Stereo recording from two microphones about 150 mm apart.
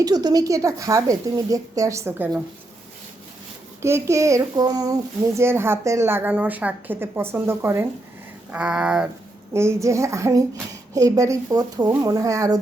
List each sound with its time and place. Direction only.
0.0 s a woman's voice: 25° right (ahead or behind)
3.8 s speech: 20° right (ahead or behind)
9.5 s a woman's voice: 15° right (ahead or behind)